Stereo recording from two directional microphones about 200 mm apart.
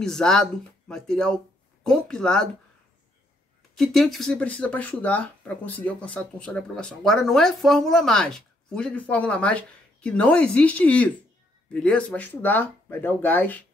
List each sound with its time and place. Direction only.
0.0 s speech: 5° left (ahead or behind)
3.7 s speech: centre (ahead or behind)